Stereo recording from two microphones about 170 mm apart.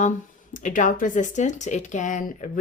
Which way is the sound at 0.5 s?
50° left (ahead or behind).